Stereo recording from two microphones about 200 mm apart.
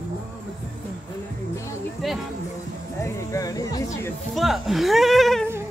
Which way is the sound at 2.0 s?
Centre (ahead or behind).